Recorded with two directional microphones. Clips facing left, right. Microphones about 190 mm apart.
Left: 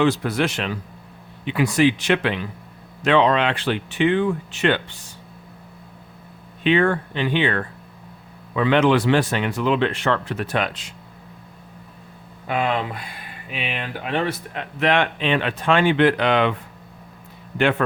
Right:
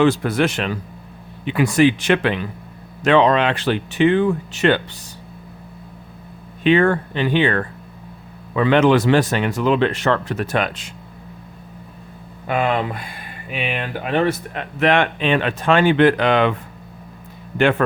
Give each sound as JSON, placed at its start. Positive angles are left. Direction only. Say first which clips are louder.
{"t": 0.0, "sound": "speech", "louder": "right 3 dB", "side_deg": -55}
{"t": 6.6, "sound": "speech", "louder": "right 3 dB", "side_deg": -45}
{"t": 12.5, "sound": "speech", "louder": "right 3 dB", "side_deg": -55}
{"t": 17.6, "sound": "speech", "louder": "right 3 dB", "side_deg": -50}